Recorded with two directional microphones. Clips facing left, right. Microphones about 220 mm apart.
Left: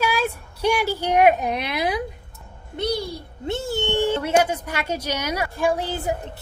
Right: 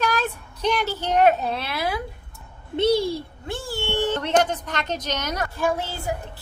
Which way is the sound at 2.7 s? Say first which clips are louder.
Right 6 dB; 25° right (ahead or behind).